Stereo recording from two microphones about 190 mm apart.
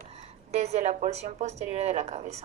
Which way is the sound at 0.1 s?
35° right (ahead or behind).